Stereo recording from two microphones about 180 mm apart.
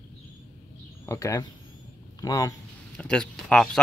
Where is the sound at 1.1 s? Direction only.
15° left (ahead or behind).